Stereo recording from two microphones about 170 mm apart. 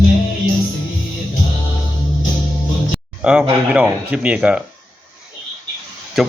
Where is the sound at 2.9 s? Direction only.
5° right (ahead or behind).